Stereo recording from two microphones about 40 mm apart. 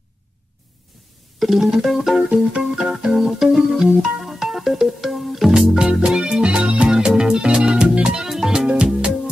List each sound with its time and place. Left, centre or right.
1.4 s organ: centre
2.2 s organ: right
2.6 s organ: centre
4.2 s music: centre
5.5 s music: centre
8.3 s music: centre